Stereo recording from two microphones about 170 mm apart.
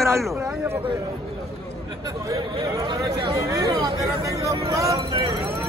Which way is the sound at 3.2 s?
25° right (ahead or behind).